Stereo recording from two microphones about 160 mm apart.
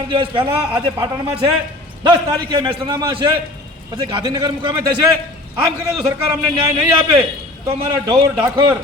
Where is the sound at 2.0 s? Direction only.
30° right (ahead or behind).